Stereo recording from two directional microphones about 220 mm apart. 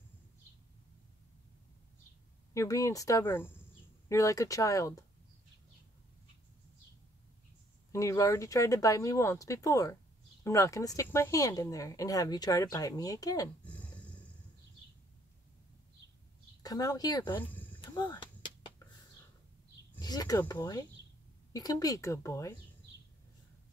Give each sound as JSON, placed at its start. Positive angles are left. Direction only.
{"t": 2.5, "sound": "speech", "side_deg": 15}
{"t": 7.9, "sound": "speech", "side_deg": 15}
{"t": 13.7, "sound": "a sound", "side_deg": 5}
{"t": 16.6, "sound": "speech", "side_deg": 15}
{"t": 17.4, "sound": "speech", "side_deg": 5}
{"t": 17.7, "sound": "a sound", "side_deg": 20}
{"t": 20.0, "sound": "speech", "side_deg": 20}